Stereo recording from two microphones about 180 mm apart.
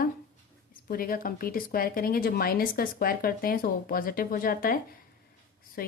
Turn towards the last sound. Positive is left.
turn(degrees=55)  # may be behind; listen again after turning